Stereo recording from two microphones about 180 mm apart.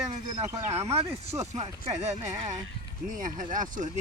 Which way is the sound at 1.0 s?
35° right (ahead or behind).